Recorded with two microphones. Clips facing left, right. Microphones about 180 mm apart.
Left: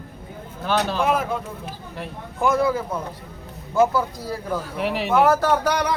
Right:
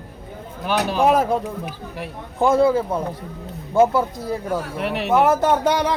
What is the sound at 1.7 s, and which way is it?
Speech, 10° right (ahead or behind).